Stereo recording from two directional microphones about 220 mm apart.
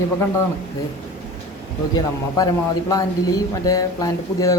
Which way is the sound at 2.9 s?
15° left (ahead or behind).